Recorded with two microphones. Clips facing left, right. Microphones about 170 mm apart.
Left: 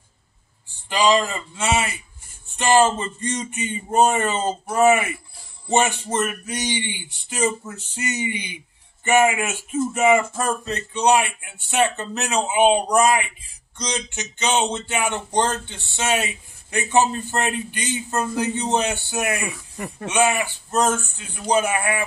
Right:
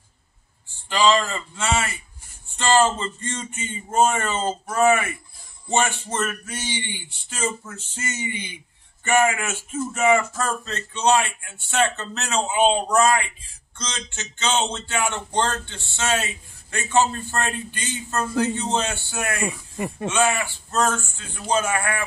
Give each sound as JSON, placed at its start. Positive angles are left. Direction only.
{"t": 0.8, "sound": "speech", "side_deg": 15}
{"t": 19.4, "sound": "speech", "side_deg": -20}
{"t": 20.1, "sound": "speech", "side_deg": 15}